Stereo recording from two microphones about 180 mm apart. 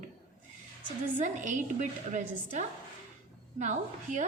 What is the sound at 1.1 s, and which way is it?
A woman's voice, 45° right (ahead or behind).